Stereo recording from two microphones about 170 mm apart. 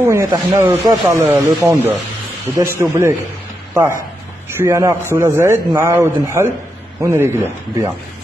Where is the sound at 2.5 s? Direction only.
15° right (ahead or behind).